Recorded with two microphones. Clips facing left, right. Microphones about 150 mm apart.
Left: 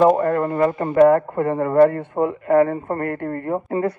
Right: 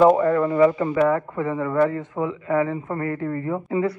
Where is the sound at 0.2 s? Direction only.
50° left (ahead or behind).